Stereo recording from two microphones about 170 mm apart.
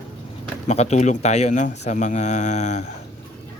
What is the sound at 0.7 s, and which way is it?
Speech, 40° left (ahead or behind).